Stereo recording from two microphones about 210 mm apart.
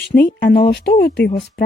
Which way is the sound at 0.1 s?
20° left (ahead or behind).